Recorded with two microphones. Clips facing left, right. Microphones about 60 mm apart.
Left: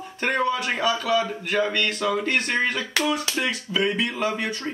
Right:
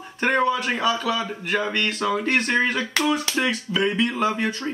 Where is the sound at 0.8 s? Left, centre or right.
Centre.